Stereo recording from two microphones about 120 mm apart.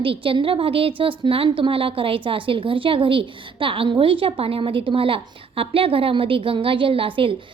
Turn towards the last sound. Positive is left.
turn(degrees=-50)  # may be behind; listen again after turning